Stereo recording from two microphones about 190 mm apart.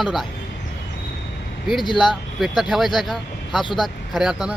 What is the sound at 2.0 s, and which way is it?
Speech, centre (ahead or behind).